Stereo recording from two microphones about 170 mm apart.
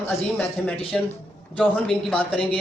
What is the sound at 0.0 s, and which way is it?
Speech, 10° left (ahead or behind).